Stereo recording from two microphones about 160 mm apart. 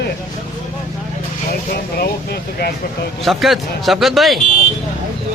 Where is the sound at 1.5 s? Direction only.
75° left (ahead or behind).